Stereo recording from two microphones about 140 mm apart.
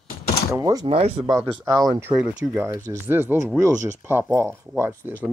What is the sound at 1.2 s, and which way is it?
Speech, 25° right (ahead or behind).